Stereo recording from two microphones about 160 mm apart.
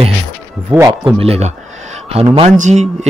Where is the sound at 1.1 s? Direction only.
40° right (ahead or behind).